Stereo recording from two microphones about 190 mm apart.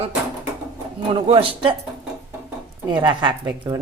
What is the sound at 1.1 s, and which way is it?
Speech, 30° right (ahead or behind).